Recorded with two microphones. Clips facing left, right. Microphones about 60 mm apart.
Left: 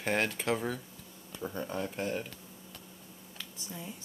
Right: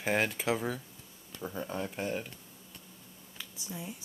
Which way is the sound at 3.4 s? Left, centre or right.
Centre.